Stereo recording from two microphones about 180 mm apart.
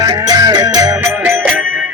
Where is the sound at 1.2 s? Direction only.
10° right (ahead or behind).